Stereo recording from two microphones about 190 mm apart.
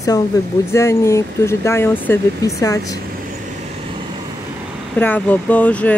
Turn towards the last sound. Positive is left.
turn(degrees=5)  # may be behind; listen again after turning